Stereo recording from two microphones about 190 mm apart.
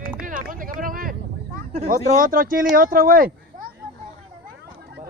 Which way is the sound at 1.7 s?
45° right (ahead or behind).